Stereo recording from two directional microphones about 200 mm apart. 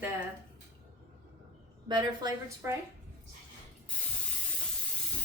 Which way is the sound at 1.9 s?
20° right (ahead or behind).